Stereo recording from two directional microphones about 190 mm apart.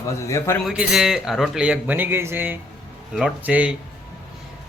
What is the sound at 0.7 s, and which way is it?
Speech, 5° right (ahead or behind).